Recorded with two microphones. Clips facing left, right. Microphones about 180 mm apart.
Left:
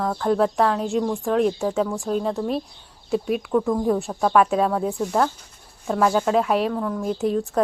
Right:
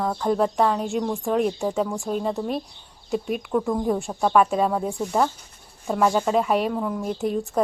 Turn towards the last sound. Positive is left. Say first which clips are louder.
# left 2 dB
turn(degrees=0)  # may be behind; listen again after turning